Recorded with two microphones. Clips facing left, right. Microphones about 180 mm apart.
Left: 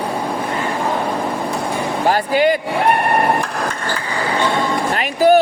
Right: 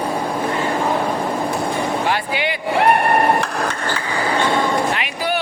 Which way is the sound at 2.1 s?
40° left (ahead or behind).